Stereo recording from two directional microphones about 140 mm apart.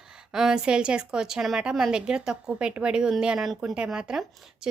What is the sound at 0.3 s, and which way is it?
A woman's voice, 5° right (ahead or behind).